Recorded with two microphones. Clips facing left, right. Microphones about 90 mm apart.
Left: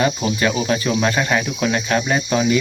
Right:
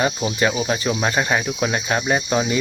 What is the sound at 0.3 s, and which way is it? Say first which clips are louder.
Cricket: left 1 dB; 15° right (ahead or behind).